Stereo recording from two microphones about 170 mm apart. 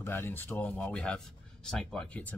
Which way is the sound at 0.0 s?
10° left (ahead or behind).